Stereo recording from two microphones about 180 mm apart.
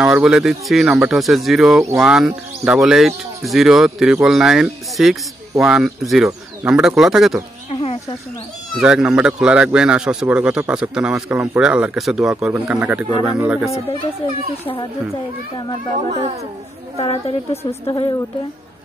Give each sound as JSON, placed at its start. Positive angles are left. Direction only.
{"t": 0.0, "sound": "a man's voice", "side_deg": -5}
{"t": 8.7, "sound": "a man's voice", "side_deg": -5}
{"t": 17.0, "sound": "a woman's voice", "side_deg": 30}